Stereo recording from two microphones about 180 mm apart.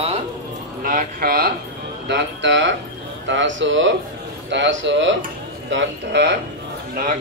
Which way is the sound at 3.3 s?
90° right.